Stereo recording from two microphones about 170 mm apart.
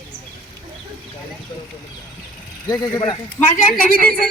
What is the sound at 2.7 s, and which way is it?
Speech, 25° left (ahead or behind).